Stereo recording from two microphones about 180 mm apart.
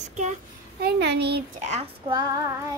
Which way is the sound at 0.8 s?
70° right (ahead or behind).